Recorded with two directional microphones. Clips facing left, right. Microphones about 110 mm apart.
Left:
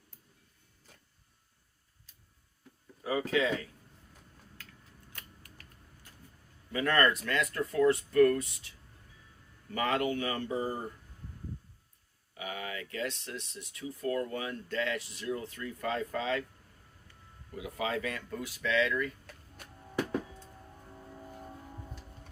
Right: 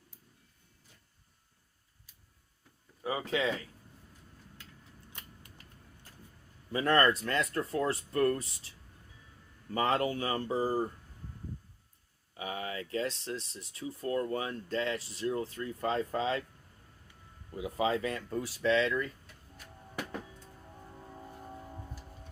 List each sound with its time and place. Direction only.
3.0 s speech: 25° right (ahead or behind)
4.6 s scissors: 20° right (ahead or behind)
5.1 s typewriter: 20° right (ahead or behind)
6.7 s speech: 30° right (ahead or behind)
12.4 s speech: 30° right (ahead or behind)
17.6 s speech: 30° right (ahead or behind)